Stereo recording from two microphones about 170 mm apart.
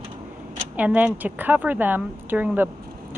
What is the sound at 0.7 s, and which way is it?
Speech, 10° right (ahead or behind).